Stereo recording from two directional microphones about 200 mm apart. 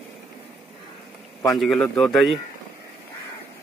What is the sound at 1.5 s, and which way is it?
Speech, centre (ahead or behind).